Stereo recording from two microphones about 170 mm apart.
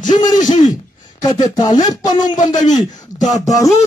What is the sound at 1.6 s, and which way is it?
Speech, 25° left (ahead or behind).